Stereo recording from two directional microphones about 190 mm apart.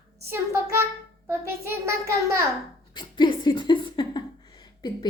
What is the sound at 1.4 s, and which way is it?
A child's voice, 15° right (ahead or behind).